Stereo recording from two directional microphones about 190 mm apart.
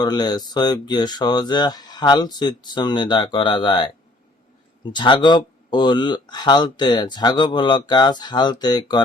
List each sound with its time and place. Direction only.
0.0 s speech: 20° left (ahead or behind)